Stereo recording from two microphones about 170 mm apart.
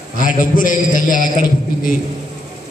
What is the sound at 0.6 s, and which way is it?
Speech, 50° left (ahead or behind).